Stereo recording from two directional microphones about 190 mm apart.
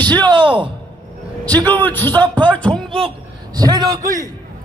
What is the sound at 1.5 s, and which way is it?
Speech, 10° left (ahead or behind).